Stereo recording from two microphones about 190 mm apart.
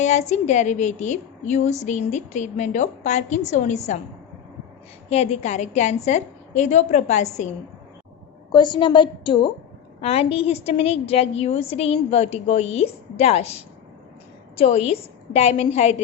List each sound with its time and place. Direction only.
0.0 s a woman's voice: 35° left (ahead or behind)
5.0 s a woman's voice: 35° left (ahead or behind)
8.5 s a woman's voice: 25° left (ahead or behind)